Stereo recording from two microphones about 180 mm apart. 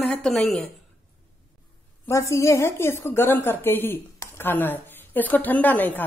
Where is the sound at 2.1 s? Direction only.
15° left (ahead or behind).